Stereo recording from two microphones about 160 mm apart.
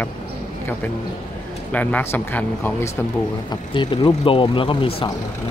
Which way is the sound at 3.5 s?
30° left (ahead or behind).